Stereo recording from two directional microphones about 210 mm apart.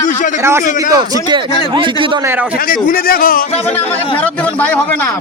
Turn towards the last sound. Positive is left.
turn(degrees=5)  # may be behind; listen again after turning